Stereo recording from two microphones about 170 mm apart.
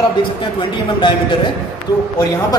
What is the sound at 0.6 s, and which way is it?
Speech, 30° left (ahead or behind).